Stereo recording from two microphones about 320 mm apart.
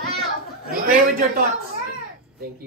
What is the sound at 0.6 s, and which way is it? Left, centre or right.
Speech, right.